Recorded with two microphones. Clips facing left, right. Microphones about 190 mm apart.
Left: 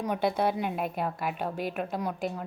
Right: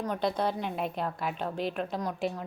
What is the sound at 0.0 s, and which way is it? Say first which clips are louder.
A woman's voice: left 2 dB; 10° left (ahead or behind).